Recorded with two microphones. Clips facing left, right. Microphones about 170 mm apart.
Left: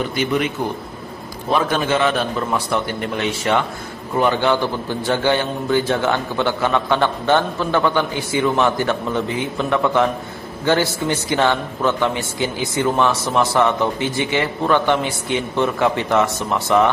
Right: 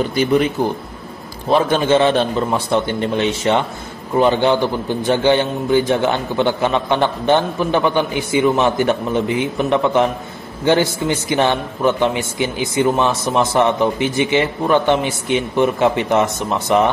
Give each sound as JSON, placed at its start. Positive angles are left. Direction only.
{"t": 0.1, "sound": "a man's voice", "side_deg": -35}
{"t": 1.5, "sound": "a man's voice", "side_deg": -30}